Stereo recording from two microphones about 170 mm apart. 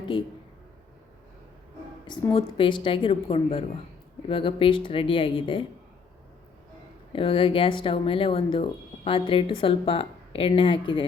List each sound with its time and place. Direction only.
2.0 s a woman's voice: 30° left (ahead or behind)
7.1 s a woman's voice: 30° left (ahead or behind)